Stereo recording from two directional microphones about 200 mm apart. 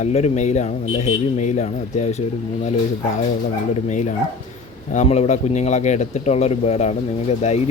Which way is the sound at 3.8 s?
40° left (ahead or behind).